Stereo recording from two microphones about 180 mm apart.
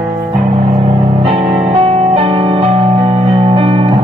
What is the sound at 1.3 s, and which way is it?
Music, 30° right (ahead or behind).